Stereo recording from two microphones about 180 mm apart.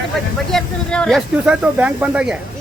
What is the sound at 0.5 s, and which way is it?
Speech, 5° left (ahead or behind).